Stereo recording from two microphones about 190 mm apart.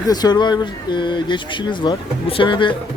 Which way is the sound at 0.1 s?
20° left (ahead or behind).